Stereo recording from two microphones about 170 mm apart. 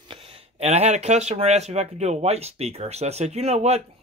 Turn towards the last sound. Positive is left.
turn(degrees=-40)  # may be behind; listen again after turning